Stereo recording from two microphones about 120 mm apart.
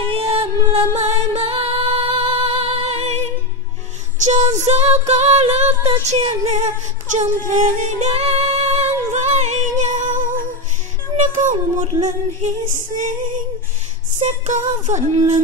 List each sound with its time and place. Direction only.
0.1 s music: 50° right (ahead or behind)
7.2 s music: 90° right
8.1 s music: 60° right (ahead or behind); by 10.5 s 90° right
11.1 s child singing: 90° right
12.0 s music: 90° right
14.2 s music: 80° right